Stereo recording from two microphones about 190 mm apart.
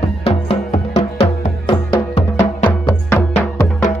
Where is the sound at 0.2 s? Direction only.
30° left (ahead or behind).